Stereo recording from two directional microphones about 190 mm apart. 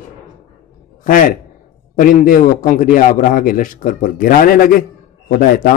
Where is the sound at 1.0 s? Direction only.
45° left (ahead or behind).